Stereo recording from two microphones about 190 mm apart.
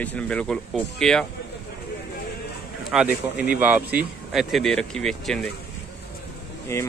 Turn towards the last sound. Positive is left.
turn(degrees=15)  # may be behind; listen again after turning